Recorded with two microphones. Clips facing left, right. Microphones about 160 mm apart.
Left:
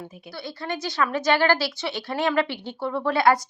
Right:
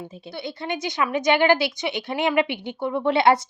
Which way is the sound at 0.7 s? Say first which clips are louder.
Right 1 dB; 20° right (ahead or behind).